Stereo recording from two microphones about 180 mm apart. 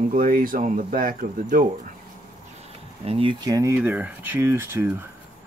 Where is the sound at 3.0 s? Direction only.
30° right (ahead or behind); by 5.0 s 15° right (ahead or behind).